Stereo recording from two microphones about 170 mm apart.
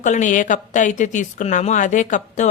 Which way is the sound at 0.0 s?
45° left (ahead or behind).